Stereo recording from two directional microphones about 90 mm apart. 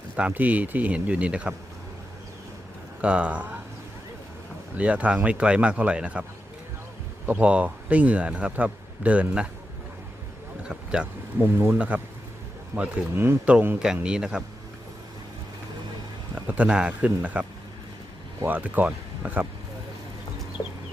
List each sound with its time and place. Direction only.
0.2 s speech: 15° right (ahead or behind)
3.0 s speech: 15° right (ahead or behind)
4.8 s speech: 15° right (ahead or behind)
7.3 s speech: 15° right (ahead or behind)
10.6 s a sound: 10° right (ahead or behind)
11.3 s speech: 25° right (ahead or behind)
12.7 s speech: 15° right (ahead or behind)
16.3 s speech: 15° right (ahead or behind)
18.4 s speech: 20° right (ahead or behind)